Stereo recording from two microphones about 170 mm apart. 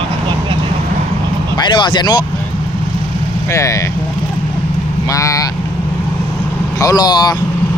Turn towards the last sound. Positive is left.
turn(degrees=25)  # may be behind; listen again after turning